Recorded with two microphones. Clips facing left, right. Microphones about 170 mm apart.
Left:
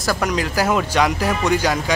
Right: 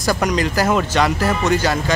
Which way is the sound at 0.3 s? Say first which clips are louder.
Even; 10° left (ahead or behind).